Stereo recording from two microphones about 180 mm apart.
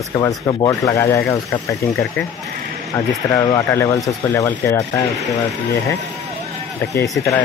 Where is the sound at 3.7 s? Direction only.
10° left (ahead or behind).